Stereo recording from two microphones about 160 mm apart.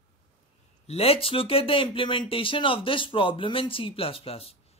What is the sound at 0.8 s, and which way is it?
Speech, 40° left (ahead or behind).